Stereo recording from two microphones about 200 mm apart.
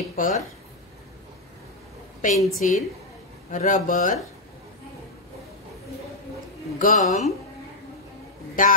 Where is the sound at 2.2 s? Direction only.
40° left (ahead or behind).